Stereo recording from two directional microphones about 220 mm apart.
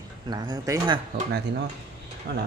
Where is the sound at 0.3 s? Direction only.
15° right (ahead or behind).